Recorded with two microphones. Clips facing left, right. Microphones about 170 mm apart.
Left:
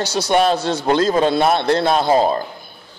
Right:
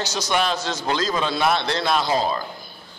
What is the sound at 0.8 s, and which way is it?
A man's voice, 50° left (ahead or behind).